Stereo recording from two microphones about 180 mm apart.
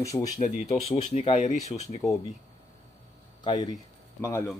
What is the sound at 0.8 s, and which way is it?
Speech, 35° left (ahead or behind).